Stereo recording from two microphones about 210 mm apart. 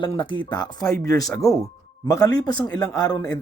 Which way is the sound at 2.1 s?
15° left (ahead or behind).